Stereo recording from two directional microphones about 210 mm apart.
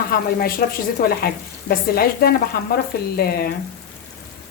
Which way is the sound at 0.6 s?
45° left (ahead or behind).